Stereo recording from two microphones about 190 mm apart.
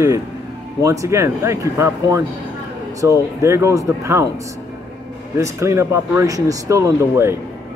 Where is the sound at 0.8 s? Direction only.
15° right (ahead or behind).